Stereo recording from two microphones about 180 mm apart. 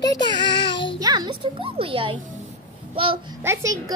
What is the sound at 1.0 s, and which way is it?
Speech, 25° right (ahead or behind).